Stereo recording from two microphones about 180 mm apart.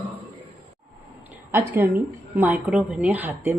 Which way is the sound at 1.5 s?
10° right (ahead or behind).